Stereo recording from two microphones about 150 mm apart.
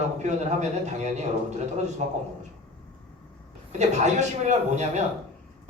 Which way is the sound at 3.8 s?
50° right (ahead or behind).